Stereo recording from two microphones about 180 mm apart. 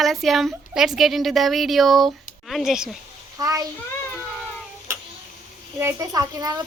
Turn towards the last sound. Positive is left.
turn(degrees=-20)  # may be behind; listen again after turning